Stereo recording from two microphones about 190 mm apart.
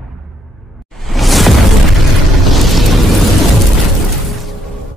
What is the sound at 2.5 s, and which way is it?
Music, centre (ahead or behind).